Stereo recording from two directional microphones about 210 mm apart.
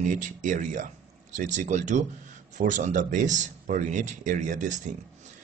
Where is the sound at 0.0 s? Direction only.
40° right (ahead or behind).